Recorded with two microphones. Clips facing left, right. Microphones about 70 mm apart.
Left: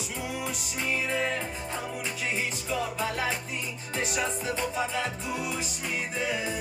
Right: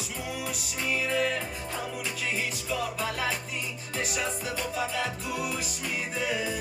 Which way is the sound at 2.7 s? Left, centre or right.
Left.